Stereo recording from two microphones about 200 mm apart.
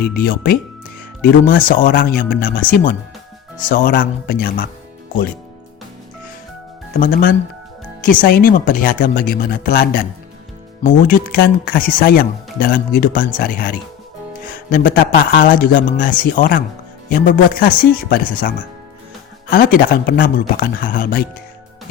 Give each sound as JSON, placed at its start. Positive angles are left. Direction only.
{"t": 0.0, "sound": "speech", "side_deg": 50}
{"t": 3.7, "sound": "speech", "side_deg": 45}
{"t": 7.0, "sound": "speech", "side_deg": 45}